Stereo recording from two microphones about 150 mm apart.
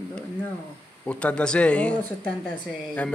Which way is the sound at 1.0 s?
10° left (ahead or behind).